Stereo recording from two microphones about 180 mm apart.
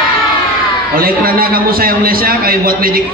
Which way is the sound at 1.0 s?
55° right (ahead or behind).